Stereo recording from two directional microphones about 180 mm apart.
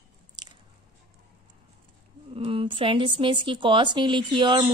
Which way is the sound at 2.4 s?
30° right (ahead or behind).